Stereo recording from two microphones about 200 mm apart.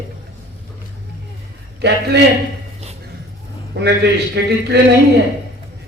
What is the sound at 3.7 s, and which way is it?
A man's voice, 60° right (ahead or behind).